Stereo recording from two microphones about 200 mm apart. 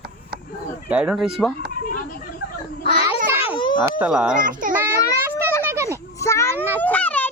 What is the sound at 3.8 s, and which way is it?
Speech, 5° right (ahead or behind).